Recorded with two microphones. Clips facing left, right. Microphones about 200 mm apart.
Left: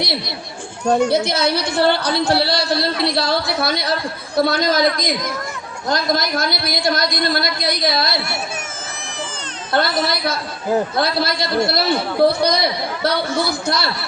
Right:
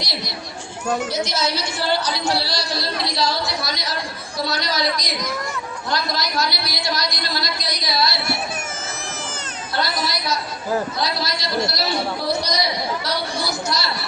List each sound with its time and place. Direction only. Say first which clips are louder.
1.1 s a man's voice: left 6 dB; 60° left (ahead or behind)
9.7 s a man's voice: left 6 dB; 55° left (ahead or behind)